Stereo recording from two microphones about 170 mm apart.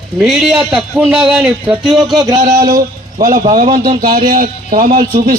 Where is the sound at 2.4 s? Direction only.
50° right (ahead or behind).